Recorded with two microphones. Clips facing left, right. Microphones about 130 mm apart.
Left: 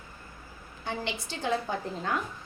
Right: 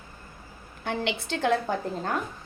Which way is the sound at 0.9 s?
65° right (ahead or behind).